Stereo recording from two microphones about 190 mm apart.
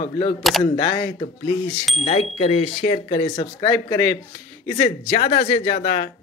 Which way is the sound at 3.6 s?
20° left (ahead or behind).